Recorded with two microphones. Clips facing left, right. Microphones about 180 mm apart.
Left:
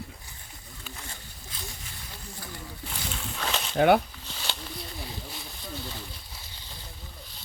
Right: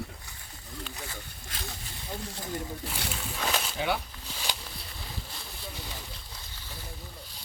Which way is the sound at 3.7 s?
55° left (ahead or behind).